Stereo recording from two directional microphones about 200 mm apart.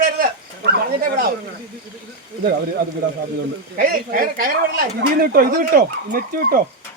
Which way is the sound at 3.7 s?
45° right (ahead or behind).